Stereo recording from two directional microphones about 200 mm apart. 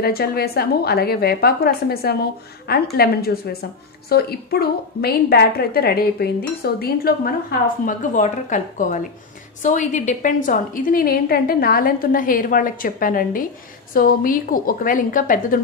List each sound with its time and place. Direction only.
0.0 s a woman's voice: 50° left (ahead or behind)